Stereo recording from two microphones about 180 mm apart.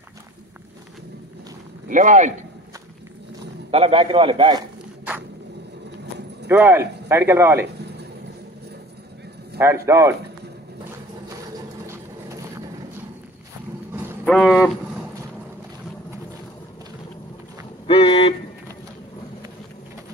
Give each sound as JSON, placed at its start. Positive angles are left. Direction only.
{"t": 1.9, "sound": "speech", "side_deg": -45}
{"t": 3.7, "sound": "a man's voice", "side_deg": -30}
{"t": 6.5, "sound": "a man's voice", "side_deg": -10}
{"t": 9.8, "sound": "a man's voice", "side_deg": -15}
{"t": 11.8, "sound": "a sound", "side_deg": -15}
{"t": 14.2, "sound": "speech", "side_deg": 5}
{"t": 17.8, "sound": "a sound", "side_deg": 30}